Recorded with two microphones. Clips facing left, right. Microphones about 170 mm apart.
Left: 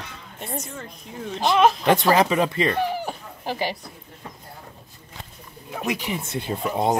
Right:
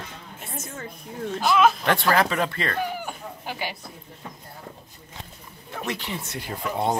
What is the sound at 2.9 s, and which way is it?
Chicken, 35° left (ahead or behind).